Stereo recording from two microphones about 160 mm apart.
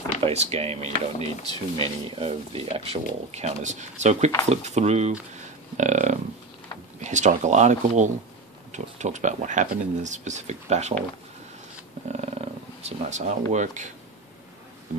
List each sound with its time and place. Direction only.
0.2 s speech: 40° right (ahead or behind)
5.3 s a sound: 50° right (ahead or behind)
7.0 s speech: 50° right (ahead or behind)
12.1 s speech: 40° right (ahead or behind)